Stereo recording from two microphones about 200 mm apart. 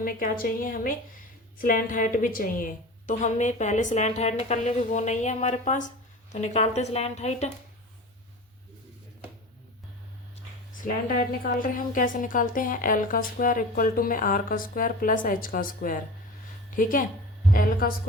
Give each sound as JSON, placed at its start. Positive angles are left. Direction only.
{"t": 0.0, "sound": "a woman's voice", "side_deg": 45}
{"t": 10.8, "sound": "a woman's voice", "side_deg": 45}